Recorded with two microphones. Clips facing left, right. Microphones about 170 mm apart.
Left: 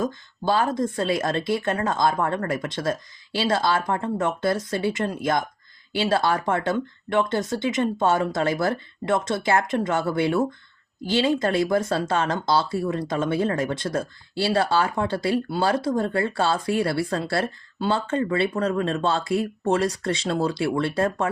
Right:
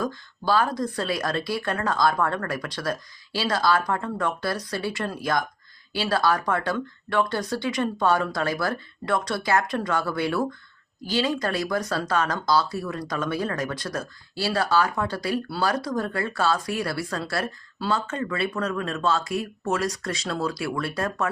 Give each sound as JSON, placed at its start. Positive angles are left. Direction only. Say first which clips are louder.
{"t": 0.0, "sound": "speech", "louder": "left 2 dB", "side_deg": 20}